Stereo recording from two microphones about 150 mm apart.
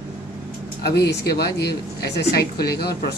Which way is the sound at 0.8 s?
90° left.